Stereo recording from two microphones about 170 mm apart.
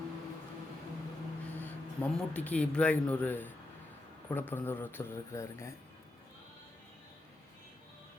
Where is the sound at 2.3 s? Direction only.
10° left (ahead or behind).